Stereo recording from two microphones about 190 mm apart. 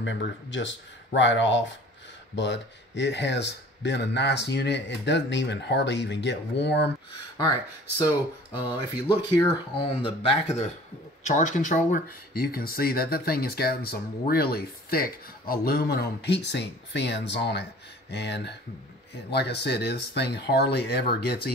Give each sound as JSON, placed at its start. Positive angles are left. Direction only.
{"t": 0.0, "sound": "speech", "side_deg": 70}
{"t": 9.0, "sound": "speech", "side_deg": 25}